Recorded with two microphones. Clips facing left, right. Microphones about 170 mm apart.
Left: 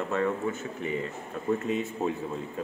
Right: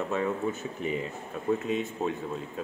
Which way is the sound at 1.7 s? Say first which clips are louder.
Left 1 dB; centre (ahead or behind).